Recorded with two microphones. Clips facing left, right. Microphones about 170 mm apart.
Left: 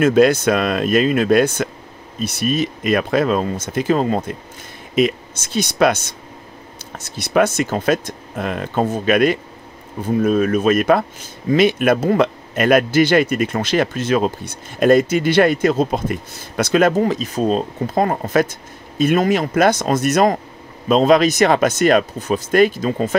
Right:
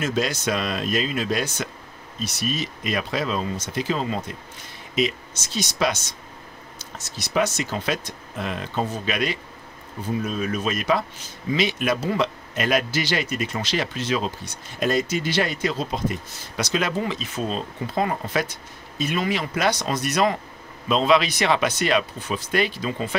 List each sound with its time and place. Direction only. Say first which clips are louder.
0.0 s speech: left 12 dB; 55° left (ahead or behind)